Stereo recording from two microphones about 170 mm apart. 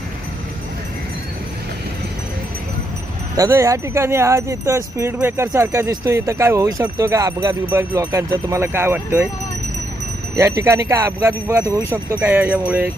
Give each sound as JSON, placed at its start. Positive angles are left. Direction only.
{"t": 3.3, "sound": "speech", "side_deg": -20}
{"t": 10.3, "sound": "speech", "side_deg": -15}